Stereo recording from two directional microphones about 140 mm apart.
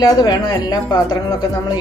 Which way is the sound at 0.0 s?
25° left (ahead or behind).